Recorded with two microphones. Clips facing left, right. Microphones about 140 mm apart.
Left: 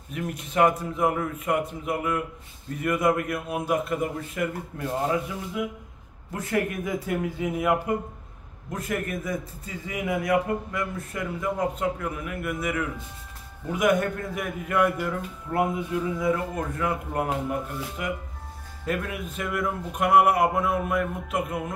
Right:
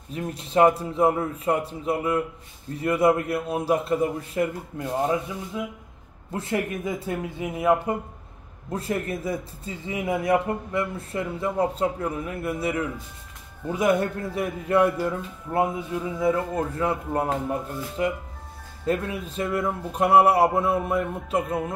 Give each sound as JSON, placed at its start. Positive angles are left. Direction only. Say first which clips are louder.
{"t": 0.1, "sound": "a man's voice", "louder": "right 4 dB", "side_deg": -30}
{"t": 6.3, "sound": "a man's voice", "louder": "even", "side_deg": -25}